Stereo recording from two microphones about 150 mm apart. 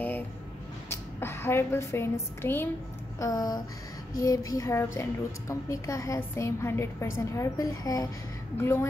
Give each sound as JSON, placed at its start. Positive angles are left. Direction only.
{"t": 0.8, "sound": "a woman's voice", "side_deg": 15}
{"t": 3.2, "sound": "a woman's voice", "side_deg": 25}